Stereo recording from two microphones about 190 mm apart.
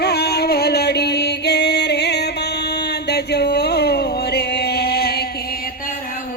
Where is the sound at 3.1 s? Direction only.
60° left (ahead or behind).